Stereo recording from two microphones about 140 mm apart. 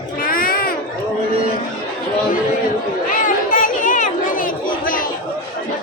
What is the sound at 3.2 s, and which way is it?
Chatter, 70° left (ahead or behind).